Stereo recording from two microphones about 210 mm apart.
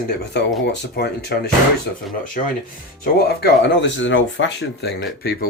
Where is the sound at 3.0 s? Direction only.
50° left (ahead or behind).